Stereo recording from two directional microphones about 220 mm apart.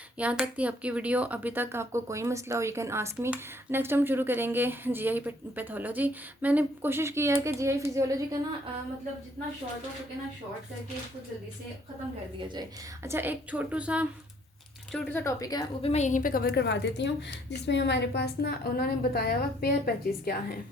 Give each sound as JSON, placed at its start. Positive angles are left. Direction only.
{"t": 0.2, "sound": "speech", "side_deg": -5}
{"t": 13.1, "sound": "speech", "side_deg": -10}
{"t": 14.9, "sound": "a woman's voice", "side_deg": 10}
{"t": 15.9, "sound": "a woman's voice", "side_deg": 30}